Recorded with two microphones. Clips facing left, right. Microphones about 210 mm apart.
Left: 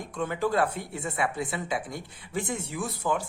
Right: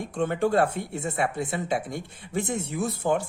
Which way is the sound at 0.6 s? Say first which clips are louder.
Right 3 dB; 25° right (ahead or behind).